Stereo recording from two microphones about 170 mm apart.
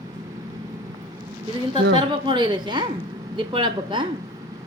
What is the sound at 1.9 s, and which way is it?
A woman's voice, 25° right (ahead or behind).